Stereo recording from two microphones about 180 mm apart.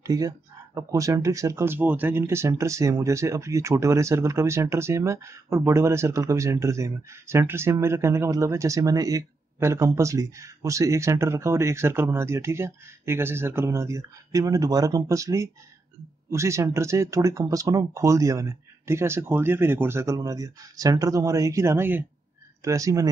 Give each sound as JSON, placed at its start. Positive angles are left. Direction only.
{"t": 0.0, "sound": "speech", "side_deg": -20}